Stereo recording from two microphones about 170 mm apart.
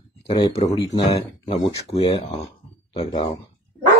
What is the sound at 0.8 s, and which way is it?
Speech, 20° left (ahead or behind).